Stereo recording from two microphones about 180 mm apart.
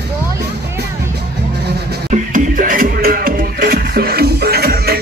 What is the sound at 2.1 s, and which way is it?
Music, 45° right (ahead or behind).